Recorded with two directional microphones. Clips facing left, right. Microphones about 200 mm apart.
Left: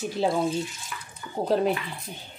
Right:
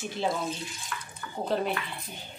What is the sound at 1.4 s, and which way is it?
Speech, 40° left (ahead or behind).